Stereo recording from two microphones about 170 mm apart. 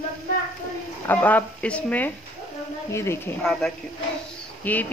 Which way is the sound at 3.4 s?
5° left (ahead or behind).